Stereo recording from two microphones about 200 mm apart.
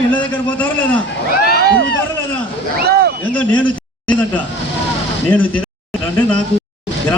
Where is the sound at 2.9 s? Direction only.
50° right (ahead or behind).